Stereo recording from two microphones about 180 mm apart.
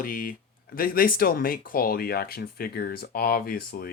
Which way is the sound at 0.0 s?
50° left (ahead or behind).